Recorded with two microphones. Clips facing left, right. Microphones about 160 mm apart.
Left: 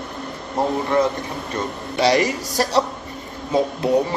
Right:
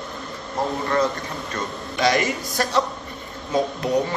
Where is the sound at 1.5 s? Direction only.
30° left (ahead or behind).